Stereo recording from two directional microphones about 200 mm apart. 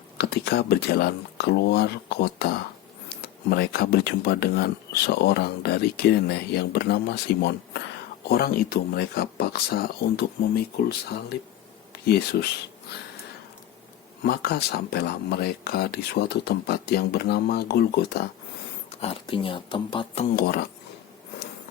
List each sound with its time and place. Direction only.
0.2 s speech: 55° left (ahead or behind)
12.0 s speech: 55° left (ahead or behind)
14.3 s speech: 50° left (ahead or behind)
18.9 s speech: 30° left (ahead or behind)
20.3 s speech: 50° left (ahead or behind)